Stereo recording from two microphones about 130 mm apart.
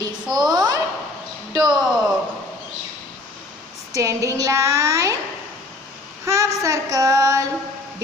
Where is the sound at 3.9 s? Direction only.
25° right (ahead or behind).